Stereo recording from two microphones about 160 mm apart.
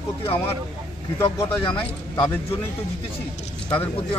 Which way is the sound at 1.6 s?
35° left (ahead or behind).